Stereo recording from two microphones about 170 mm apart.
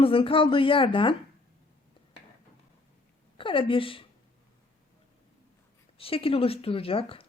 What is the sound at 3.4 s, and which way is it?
Speech, 30° left (ahead or behind).